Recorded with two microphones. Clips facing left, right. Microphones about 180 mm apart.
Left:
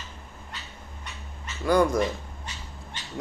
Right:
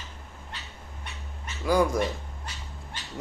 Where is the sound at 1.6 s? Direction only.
5° right (ahead or behind).